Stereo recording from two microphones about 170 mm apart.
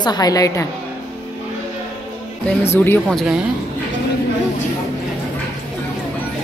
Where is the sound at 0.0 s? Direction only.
25° left (ahead or behind).